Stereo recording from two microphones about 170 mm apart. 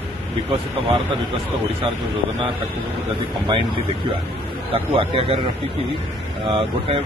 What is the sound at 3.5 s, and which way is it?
Speech, 30° right (ahead or behind).